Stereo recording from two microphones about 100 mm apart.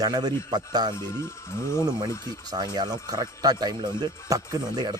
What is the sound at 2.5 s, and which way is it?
Speech, 45° right (ahead or behind).